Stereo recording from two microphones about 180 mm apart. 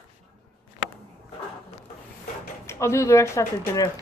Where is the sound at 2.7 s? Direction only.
15° left (ahead or behind).